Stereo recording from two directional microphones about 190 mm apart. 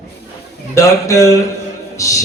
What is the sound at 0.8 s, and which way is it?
Speech, 15° left (ahead or behind).